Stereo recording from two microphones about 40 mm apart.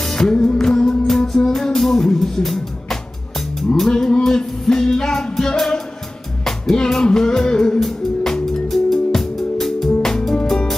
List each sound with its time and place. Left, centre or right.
0.0 s music: centre
3.9 s a sound: left
4.2 s music: centre
7.8 s music: centre